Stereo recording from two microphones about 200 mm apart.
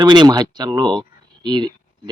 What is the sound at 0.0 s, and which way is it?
Speech, 20° right (ahead or behind).